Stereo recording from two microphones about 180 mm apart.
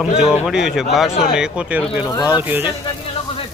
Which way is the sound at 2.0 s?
20° left (ahead or behind).